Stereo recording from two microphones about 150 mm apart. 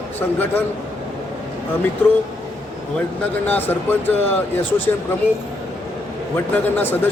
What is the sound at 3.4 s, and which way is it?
Speech, 10° left (ahead or behind).